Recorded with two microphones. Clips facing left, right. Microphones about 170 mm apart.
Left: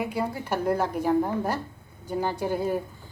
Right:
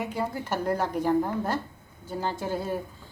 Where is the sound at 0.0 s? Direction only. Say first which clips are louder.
Left 2 dB; 10° left (ahead or behind).